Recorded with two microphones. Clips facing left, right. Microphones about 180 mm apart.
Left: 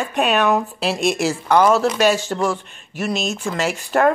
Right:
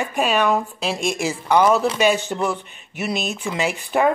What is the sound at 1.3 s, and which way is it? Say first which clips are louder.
Speech: even; 10° right (ahead or behind).